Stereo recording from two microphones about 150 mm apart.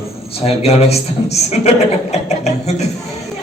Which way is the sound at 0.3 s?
40° left (ahead or behind).